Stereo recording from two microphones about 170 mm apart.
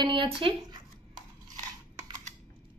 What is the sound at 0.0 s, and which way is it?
Zipper, 30° right (ahead or behind).